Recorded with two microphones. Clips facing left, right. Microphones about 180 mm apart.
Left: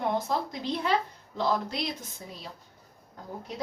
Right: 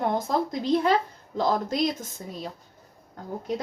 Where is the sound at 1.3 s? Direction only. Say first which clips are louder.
Right 4 dB; 45° right (ahead or behind).